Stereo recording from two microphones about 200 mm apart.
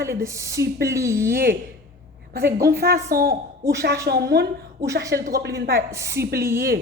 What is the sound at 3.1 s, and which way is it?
Speech, 50° right (ahead or behind).